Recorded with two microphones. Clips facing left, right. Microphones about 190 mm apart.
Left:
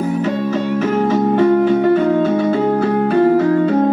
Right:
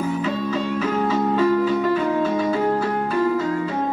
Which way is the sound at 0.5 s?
70° left (ahead or behind).